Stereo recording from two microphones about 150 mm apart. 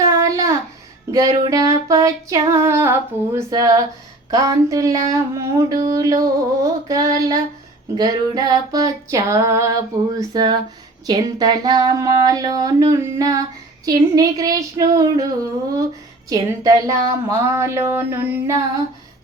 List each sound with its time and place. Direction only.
0.0 s child singing: 20° right (ahead or behind)
1.1 s speech: 20° right (ahead or behind)
16.3 s speech: 20° right (ahead or behind)